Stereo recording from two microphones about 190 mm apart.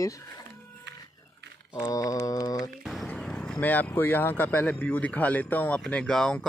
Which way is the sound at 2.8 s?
Centre (ahead or behind).